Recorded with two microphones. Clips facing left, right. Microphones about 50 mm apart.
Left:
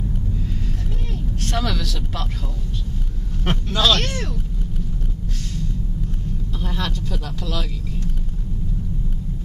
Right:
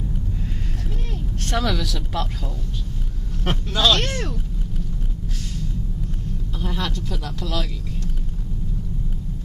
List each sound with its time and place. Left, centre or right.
1.4 s speech: centre
3.4 s speech: centre
6.6 s speech: centre